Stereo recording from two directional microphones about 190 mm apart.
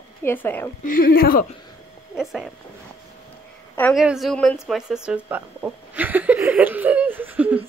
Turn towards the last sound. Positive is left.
turn(degrees=-10)  # may be behind; listen again after turning